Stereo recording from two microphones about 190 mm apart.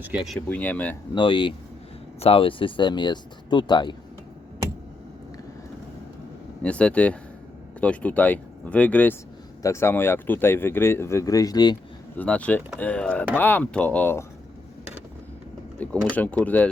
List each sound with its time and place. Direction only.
0.3 s speech: 10° left (ahead or behind)
1.1 s speech: 25° left (ahead or behind)
6.6 s speech: 5° left (ahead or behind); by 11.8 s 20° left (ahead or behind)
12.1 s speech: 5° left (ahead or behind)
15.8 s speech: 10° left (ahead or behind)